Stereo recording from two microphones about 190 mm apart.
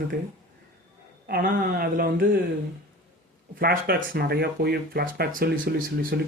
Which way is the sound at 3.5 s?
55° right (ahead or behind).